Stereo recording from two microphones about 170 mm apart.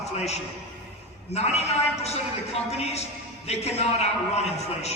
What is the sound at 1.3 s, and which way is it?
Speech, 40° left (ahead or behind).